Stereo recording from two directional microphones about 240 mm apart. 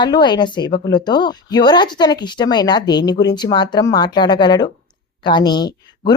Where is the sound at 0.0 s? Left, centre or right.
Centre.